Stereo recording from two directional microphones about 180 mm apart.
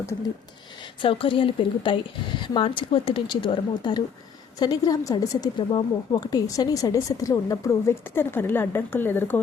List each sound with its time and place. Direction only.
1.0 s a woman's voice: 30° left (ahead or behind); by 9.4 s 10° left (ahead or behind)